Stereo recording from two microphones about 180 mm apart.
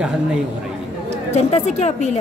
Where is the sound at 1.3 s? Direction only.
35° left (ahead or behind).